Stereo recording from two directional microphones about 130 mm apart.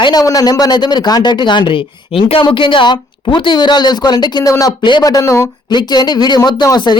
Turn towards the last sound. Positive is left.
turn(degrees=35)  # may be behind; listen again after turning